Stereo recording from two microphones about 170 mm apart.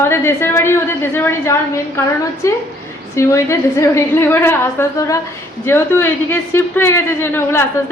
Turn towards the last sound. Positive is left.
turn(degrees=15)  # may be behind; listen again after turning